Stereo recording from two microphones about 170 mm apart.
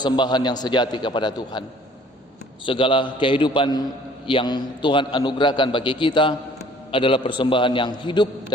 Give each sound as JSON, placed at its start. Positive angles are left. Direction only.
{"t": 0.0, "sound": "a man's voice", "side_deg": 25}
{"t": 2.6, "sound": "a man's voice", "side_deg": 30}